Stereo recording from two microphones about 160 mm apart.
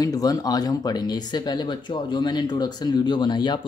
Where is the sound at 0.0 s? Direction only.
25° left (ahead or behind).